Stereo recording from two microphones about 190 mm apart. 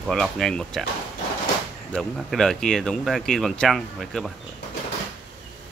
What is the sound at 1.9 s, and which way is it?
Speech, centre (ahead or behind).